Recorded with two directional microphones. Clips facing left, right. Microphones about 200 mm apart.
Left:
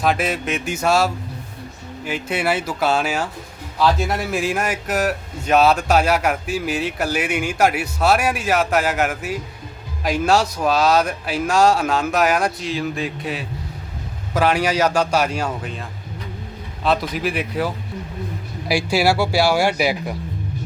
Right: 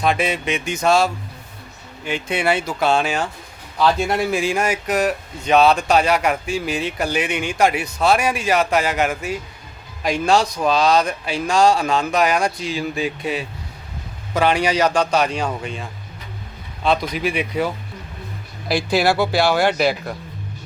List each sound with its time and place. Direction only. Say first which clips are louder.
0.0 s a man's voice: even; 5° left (ahead or behind)
18.7 s speech: even; 10° left (ahead or behind)